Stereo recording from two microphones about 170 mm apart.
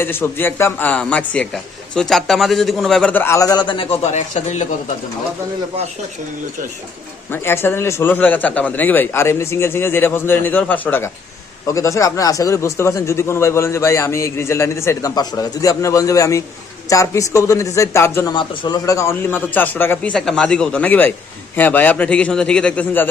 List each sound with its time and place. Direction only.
0.0 s speech: 10° left (ahead or behind); by 4.6 s 40° left (ahead or behind)
7.3 s speech: 15° left (ahead or behind)
18.3 s speech: 25° left (ahead or behind); by 23.0 s 10° left (ahead or behind)